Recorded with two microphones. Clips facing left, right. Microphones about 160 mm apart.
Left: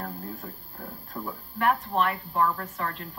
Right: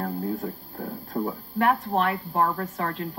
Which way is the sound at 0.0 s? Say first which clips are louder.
Right 8 dB; 45° right (ahead or behind).